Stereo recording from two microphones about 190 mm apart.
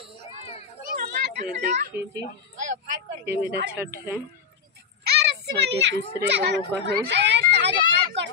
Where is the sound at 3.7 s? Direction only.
10° right (ahead or behind).